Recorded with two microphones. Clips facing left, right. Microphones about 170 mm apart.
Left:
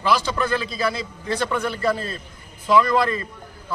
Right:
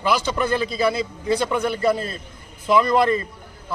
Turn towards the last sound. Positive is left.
turn(degrees=-20)  # may be behind; listen again after turning